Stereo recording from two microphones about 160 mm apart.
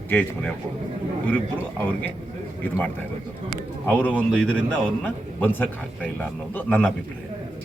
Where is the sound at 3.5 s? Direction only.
5° left (ahead or behind).